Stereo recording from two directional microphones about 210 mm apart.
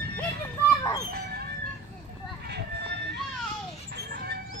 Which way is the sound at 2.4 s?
50° right (ahead or behind).